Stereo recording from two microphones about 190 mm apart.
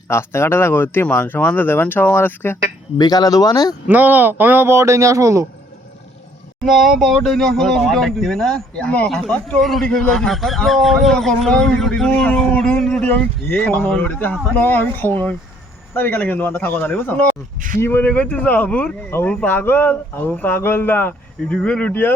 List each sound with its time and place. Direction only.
0.1 s speech: 15° left (ahead or behind)
3.8 s speech: 10° right (ahead or behind)
6.7 s speech: centre (ahead or behind)